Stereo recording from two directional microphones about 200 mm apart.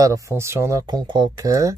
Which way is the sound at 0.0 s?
15° right (ahead or behind).